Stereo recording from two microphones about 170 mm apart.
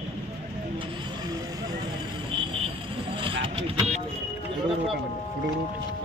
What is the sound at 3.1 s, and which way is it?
Vehicle, 30° right (ahead or behind).